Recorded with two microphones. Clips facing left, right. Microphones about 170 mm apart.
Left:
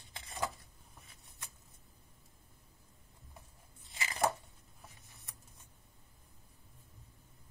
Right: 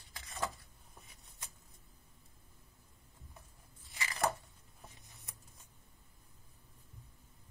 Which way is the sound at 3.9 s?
25° left (ahead or behind).